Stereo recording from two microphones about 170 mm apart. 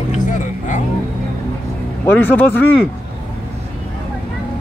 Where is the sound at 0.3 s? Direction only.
45° left (ahead or behind).